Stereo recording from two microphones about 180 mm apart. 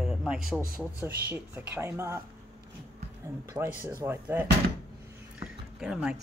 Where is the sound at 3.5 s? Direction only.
10° right (ahead or behind).